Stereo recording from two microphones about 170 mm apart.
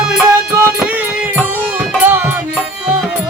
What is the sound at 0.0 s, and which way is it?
Music, 5° right (ahead or behind).